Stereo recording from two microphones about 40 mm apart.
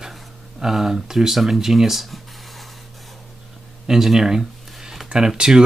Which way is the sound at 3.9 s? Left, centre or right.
Centre.